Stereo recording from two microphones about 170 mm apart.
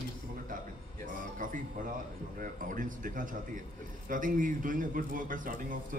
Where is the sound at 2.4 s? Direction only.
50° right (ahead or behind).